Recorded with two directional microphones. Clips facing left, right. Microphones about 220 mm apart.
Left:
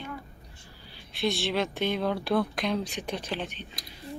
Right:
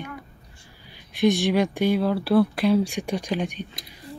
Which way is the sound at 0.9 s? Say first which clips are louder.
Right 9 dB; 15° right (ahead or behind).